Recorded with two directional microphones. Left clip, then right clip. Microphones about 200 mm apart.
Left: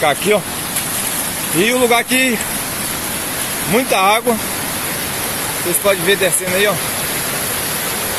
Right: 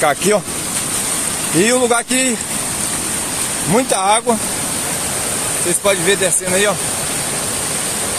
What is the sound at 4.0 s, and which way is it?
Speech, 15° right (ahead or behind).